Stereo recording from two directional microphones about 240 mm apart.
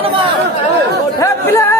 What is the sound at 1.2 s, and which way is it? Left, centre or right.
Music, centre.